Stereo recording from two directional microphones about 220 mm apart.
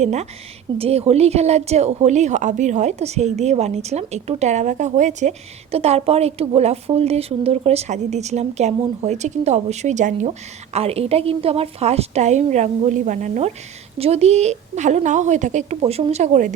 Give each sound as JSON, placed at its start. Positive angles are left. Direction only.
{"t": 0.0, "sound": "a woman's voice", "side_deg": -30}